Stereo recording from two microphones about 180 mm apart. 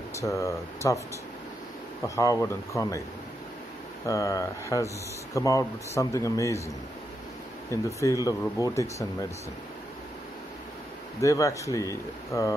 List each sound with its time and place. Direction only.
0.2 s speech: 15° left (ahead or behind)
2.0 s speech: 15° left (ahead or behind)
4.0 s speech: 15° left (ahead or behind)
7.7 s speech: 20° left (ahead or behind)
11.1 s speech: 15° left (ahead or behind)